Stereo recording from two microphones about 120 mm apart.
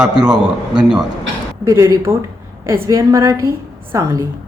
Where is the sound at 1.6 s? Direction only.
30° right (ahead or behind).